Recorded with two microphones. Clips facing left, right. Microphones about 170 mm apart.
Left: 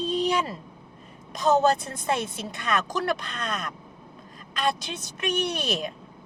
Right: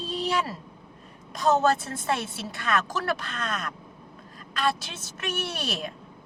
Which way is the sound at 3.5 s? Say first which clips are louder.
Left 2 dB; centre (ahead or behind).